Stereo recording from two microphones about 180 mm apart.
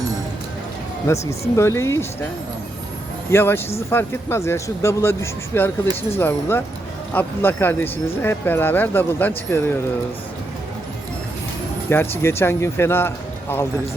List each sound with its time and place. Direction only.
1.0 s speech: 15° left (ahead or behind)
3.3 s speech: 15° left (ahead or behind)
11.9 s speech: 15° left (ahead or behind)